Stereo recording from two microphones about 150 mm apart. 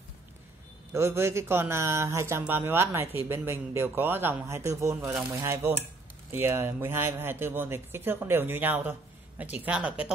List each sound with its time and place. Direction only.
0.9 s speech: 15° right (ahead or behind)